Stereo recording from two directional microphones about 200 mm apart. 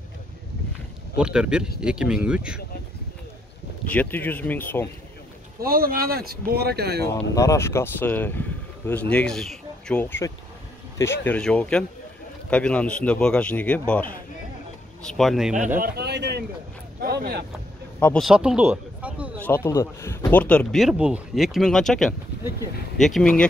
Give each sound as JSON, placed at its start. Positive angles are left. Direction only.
{"t": 1.1, "sound": "speech", "side_deg": -5}
{"t": 3.9, "sound": "speech", "side_deg": 10}
{"t": 5.6, "sound": "speech", "side_deg": -45}
{"t": 7.3, "sound": "speech", "side_deg": 15}
{"t": 15.8, "sound": "speech", "side_deg": -55}
{"t": 17.9, "sound": "speech", "side_deg": 5}
{"t": 19.3, "sound": "speech", "side_deg": 10}